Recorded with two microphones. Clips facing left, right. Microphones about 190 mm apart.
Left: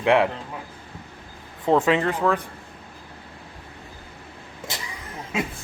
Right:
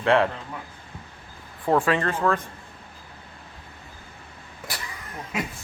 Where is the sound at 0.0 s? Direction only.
15° left (ahead or behind).